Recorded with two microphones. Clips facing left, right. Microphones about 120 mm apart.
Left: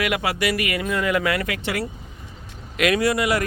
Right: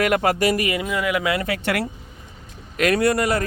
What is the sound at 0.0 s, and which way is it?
Speech, 45° right (ahead or behind).